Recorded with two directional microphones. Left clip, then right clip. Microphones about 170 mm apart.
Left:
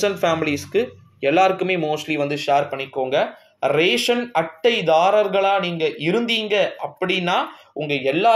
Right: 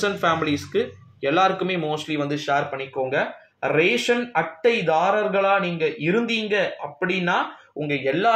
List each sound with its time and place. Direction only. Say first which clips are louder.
0.0 s speech: left 2 dB; 30° left (ahead or behind)